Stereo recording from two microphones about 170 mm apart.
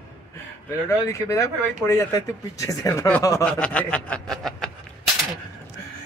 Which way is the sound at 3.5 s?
5° left (ahead or behind).